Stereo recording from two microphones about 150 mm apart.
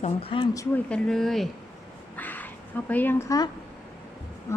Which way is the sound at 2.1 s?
10° left (ahead or behind).